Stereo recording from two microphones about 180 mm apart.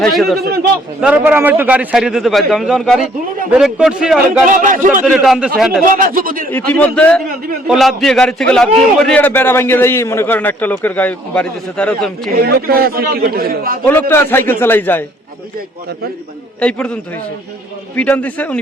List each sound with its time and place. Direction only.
0.0 s a man's voice: centre (ahead or behind)
4.4 s speech: 45° right (ahead or behind)
5.2 s a man's voice: centre (ahead or behind)
5.9 s speech: 50° right (ahead or behind)
6.5 s a man's voice: 10° left (ahead or behind)
12.4 s a man's voice: 60° right (ahead or behind)
14.1 s a man's voice: 10° left (ahead or behind)
16.6 s a man's voice: 5° left (ahead or behind)